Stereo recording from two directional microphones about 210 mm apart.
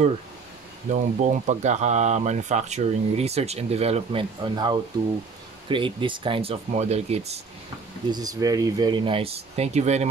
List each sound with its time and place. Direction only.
0.8 s speech: 35° right (ahead or behind)
8.1 s speech: 15° right (ahead or behind)